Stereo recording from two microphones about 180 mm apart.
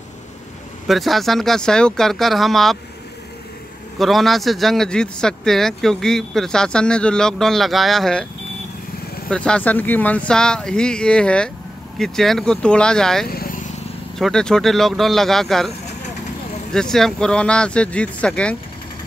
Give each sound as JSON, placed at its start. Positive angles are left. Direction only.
{"t": 0.8, "sound": "speech", "side_deg": 0}
{"t": 4.0, "sound": "speech", "side_deg": 0}
{"t": 9.3, "sound": "speech", "side_deg": 5}
{"t": 13.3, "sound": "vehicle", "side_deg": 55}
{"t": 14.1, "sound": "speech", "side_deg": 5}
{"t": 16.7, "sound": "speech", "side_deg": 5}